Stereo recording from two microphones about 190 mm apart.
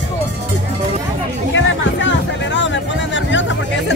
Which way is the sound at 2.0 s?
75° left (ahead or behind).